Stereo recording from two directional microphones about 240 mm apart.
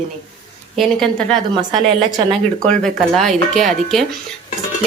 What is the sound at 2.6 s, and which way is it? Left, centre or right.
Speech, centre.